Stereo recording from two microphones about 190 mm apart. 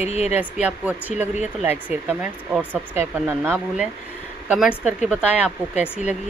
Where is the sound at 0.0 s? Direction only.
35° left (ahead or behind).